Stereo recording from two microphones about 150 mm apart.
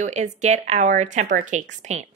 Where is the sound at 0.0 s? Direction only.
50° right (ahead or behind).